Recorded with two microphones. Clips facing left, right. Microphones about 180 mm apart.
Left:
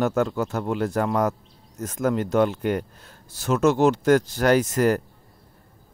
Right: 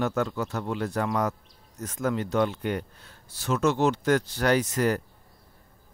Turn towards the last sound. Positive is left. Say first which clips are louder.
# left 4 dB
turn(degrees=45)  # may be behind; listen again after turning